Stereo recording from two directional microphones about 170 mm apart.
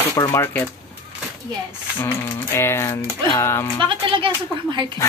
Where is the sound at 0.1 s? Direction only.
20° left (ahead or behind).